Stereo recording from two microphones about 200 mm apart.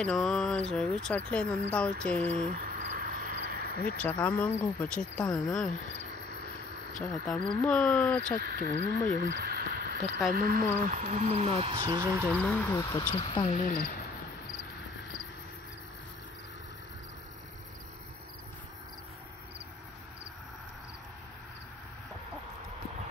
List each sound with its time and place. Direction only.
0.0 s speech: 5° left (ahead or behind)
2.5 s a sound: 45° right (ahead or behind)
4.0 s speech: 5° left (ahead or behind)
7.0 s speech: 5° left (ahead or behind)
8.4 s speech: 50° right (ahead or behind)
9.2 s a sound: 50° right (ahead or behind)
10.3 s speech: 50° right (ahead or behind); by 11.8 s 30° right (ahead or behind)
11.8 s speech: 15° right (ahead or behind)
12.3 s speech: 5° left (ahead or behind)
13.1 s speech: 20° left (ahead or behind)
13.5 s speech: 35° left (ahead or behind)
13.7 s speech: 50° left (ahead or behind)